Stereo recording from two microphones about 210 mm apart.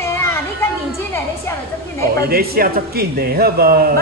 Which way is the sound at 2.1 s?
50° right (ahead or behind).